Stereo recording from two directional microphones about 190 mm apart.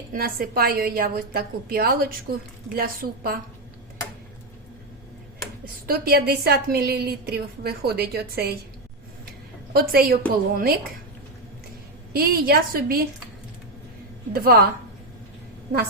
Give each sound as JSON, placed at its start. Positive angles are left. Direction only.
{"t": 0.1, "sound": "a woman's voice", "side_deg": -50}
{"t": 5.8, "sound": "a woman's voice", "side_deg": -55}
{"t": 9.7, "sound": "a woman's voice", "side_deg": -50}
{"t": 12.1, "sound": "a woman's voice", "side_deg": -50}
{"t": 14.3, "sound": "a woman's voice", "side_deg": -50}